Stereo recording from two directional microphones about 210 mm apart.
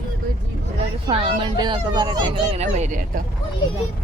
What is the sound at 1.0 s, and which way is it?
Speech, 25° right (ahead or behind).